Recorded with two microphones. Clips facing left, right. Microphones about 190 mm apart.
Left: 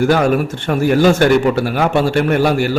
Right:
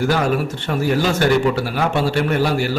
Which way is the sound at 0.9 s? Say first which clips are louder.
Left 6 dB; 55° left (ahead or behind).